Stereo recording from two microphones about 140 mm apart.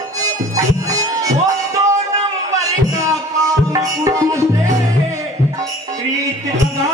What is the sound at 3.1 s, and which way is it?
Music, 25° right (ahead or behind).